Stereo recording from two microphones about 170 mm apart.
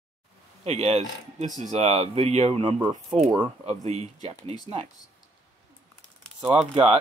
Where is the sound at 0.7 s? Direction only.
40° right (ahead or behind).